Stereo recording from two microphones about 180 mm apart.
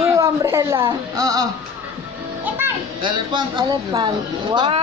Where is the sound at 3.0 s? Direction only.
25° right (ahead or behind).